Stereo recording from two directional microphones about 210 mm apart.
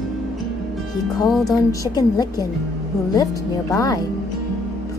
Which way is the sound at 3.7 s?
15° left (ahead or behind).